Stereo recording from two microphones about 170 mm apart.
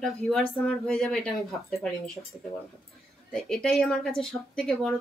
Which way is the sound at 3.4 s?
Centre (ahead or behind).